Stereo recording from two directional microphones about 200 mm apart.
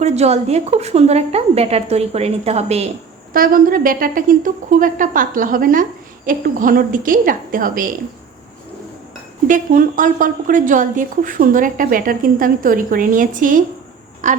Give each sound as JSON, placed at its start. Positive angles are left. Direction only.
{"t": 0.0, "sound": "a woman's voice", "side_deg": -30}
{"t": 3.3, "sound": "a woman's voice", "side_deg": -45}
{"t": 9.5, "sound": "a woman's voice", "side_deg": -40}